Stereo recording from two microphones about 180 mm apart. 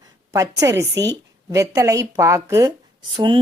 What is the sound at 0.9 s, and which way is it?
Speech, 75° right (ahead or behind).